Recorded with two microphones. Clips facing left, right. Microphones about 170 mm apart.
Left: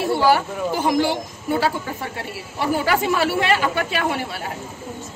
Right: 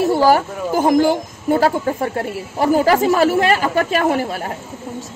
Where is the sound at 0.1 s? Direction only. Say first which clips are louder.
Right 2 dB; 40° right (ahead or behind).